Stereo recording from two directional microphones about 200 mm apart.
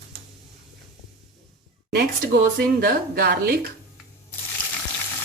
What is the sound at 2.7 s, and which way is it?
Speech, 50° right (ahead or behind).